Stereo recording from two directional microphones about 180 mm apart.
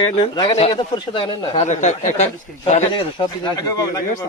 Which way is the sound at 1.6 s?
40° left (ahead or behind).